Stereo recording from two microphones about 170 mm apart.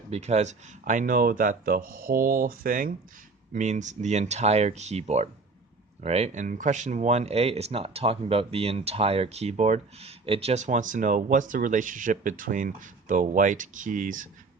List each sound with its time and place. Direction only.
0.1 s speech: 40° right (ahead or behind)